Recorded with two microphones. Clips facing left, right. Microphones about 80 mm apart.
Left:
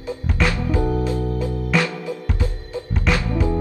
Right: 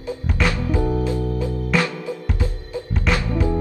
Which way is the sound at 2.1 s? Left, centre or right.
Right.